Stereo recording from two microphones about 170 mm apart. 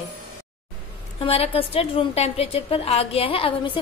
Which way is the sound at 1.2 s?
35° left (ahead or behind).